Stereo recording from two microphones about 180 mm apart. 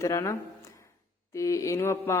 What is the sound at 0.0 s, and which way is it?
Speech, 15° left (ahead or behind).